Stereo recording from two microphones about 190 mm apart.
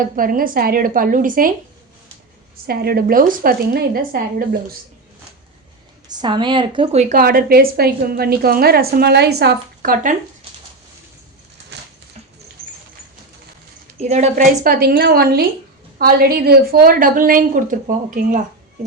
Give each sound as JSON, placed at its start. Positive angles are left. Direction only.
{"t": 0.0, "sound": "a woman's voice", "side_deg": -45}
{"t": 2.6, "sound": "a woman's voice", "side_deg": -50}
{"t": 6.1, "sound": "a woman's voice", "side_deg": -20}
{"t": 14.0, "sound": "a woman's voice", "side_deg": -35}